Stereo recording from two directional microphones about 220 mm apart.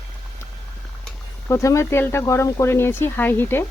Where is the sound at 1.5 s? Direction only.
15° left (ahead or behind).